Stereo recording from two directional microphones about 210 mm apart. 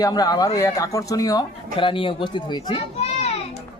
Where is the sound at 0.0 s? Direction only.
20° left (ahead or behind).